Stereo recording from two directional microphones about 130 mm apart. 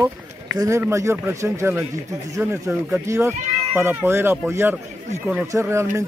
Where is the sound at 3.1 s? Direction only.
20° right (ahead or behind).